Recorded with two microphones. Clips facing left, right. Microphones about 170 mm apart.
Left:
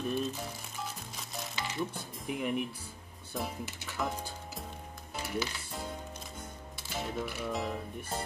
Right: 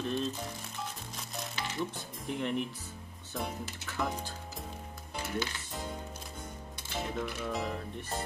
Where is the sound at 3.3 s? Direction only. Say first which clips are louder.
Even; centre (ahead or behind).